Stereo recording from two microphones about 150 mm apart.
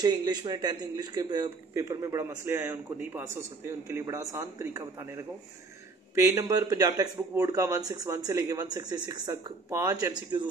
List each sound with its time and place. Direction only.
0.0 s a man's voice: 25° right (ahead or behind)
1.7 s a man's voice: 15° right (ahead or behind)